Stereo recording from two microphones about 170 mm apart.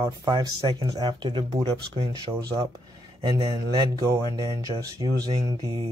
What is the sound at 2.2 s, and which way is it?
Speech, 20° right (ahead or behind).